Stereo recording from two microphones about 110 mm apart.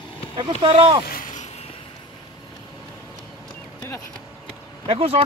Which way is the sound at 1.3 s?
80° left.